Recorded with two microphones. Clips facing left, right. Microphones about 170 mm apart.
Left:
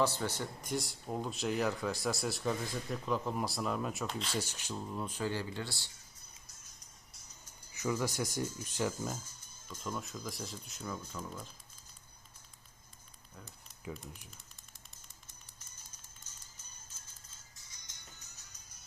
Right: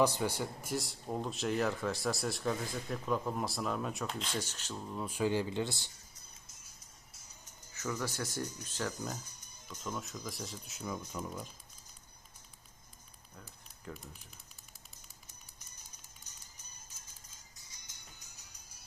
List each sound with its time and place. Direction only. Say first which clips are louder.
0.0 s speech: right 3 dB; 15° right (ahead or behind); by 5.0 s 5° left (ahead or behind)
5.0 s speech: right 7 dB; 15° right (ahead or behind)
7.7 s speech: left 3 dB; 15° left (ahead or behind)
9.1 s music: even; 15° right (ahead or behind)
9.6 s speech: even; centre (ahead or behind)
10.8 s speech: right 2 dB; 15° right (ahead or behind)
18.2 s music: even; 10° right (ahead or behind)